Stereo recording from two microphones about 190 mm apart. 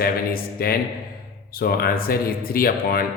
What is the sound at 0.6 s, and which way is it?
Speech, 50° left (ahead or behind).